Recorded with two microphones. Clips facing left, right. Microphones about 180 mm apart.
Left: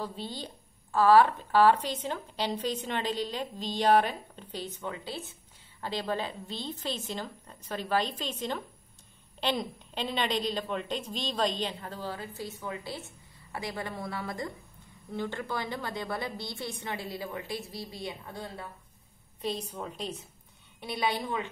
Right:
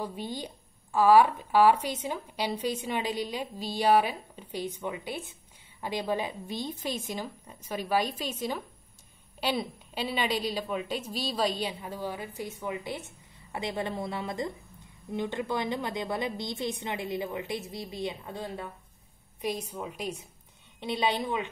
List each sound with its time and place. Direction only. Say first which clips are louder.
0.0 s a woman's voice: right 2 dB; 15° right (ahead or behind)